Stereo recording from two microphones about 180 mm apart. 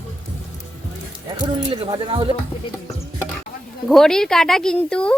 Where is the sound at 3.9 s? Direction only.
Centre (ahead or behind).